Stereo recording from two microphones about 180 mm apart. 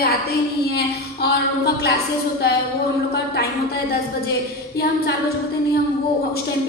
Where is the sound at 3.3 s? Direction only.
60° left (ahead or behind).